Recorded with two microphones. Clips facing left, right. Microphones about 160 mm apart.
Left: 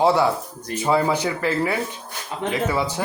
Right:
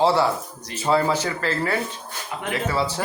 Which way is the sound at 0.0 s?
15° left (ahead or behind).